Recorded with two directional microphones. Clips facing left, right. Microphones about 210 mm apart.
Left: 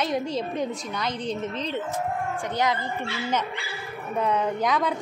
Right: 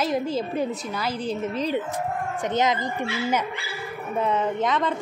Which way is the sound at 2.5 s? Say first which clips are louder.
Right 3 dB; 20° right (ahead or behind).